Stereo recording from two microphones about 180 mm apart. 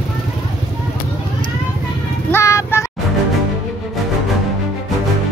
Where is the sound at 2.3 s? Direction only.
15° left (ahead or behind).